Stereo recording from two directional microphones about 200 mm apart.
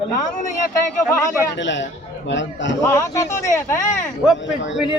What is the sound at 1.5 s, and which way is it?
A man's voice, 65° left (ahead or behind).